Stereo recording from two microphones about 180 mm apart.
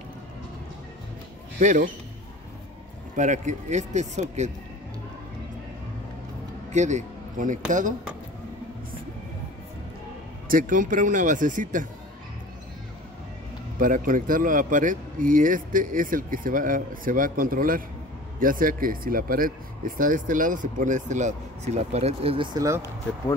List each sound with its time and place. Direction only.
1.6 s speech: 45° right (ahead or behind)
3.2 s speech: 45° right (ahead or behind)
6.7 s speech: 40° right (ahead or behind)
10.5 s speech: 45° right (ahead or behind)
13.7 s speech: 50° right (ahead or behind); by 22.8 s 20° right (ahead or behind)